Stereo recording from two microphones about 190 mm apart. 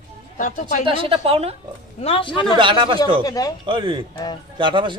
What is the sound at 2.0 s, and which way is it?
Speech, 30° left (ahead or behind).